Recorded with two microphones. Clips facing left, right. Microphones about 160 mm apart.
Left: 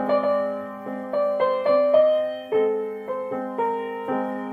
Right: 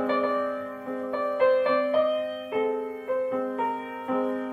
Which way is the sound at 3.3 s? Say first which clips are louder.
Left 1 dB; 45° left (ahead or behind).